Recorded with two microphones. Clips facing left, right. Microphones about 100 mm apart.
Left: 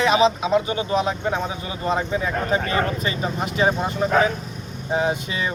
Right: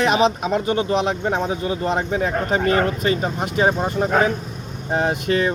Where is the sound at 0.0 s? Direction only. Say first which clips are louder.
Even; 55° right (ahead or behind).